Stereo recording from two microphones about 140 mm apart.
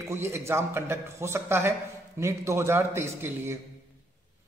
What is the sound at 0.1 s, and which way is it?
A man's voice, 15° right (ahead or behind).